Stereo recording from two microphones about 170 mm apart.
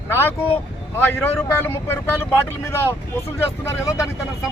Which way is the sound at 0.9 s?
10° left (ahead or behind).